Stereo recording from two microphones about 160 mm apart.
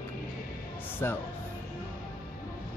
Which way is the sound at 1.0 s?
15° left (ahead or behind).